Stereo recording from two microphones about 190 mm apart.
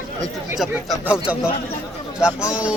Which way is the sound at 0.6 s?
5° right (ahead or behind).